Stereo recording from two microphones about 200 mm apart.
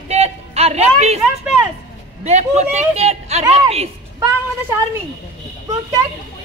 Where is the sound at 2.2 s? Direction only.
35° right (ahead or behind).